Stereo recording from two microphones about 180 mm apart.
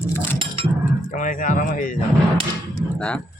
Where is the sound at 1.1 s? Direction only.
50° left (ahead or behind).